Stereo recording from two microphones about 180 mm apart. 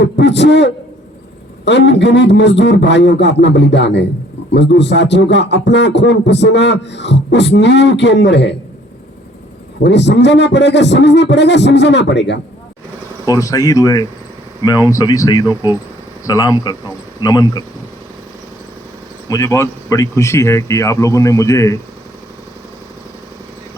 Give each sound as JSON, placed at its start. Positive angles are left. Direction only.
{"t": 0.0, "sound": "a man's voice", "side_deg": 75}
{"t": 9.8, "sound": "speech", "side_deg": 75}
{"t": 13.2, "sound": "speech", "side_deg": 20}
{"t": 19.3, "sound": "speech", "side_deg": 15}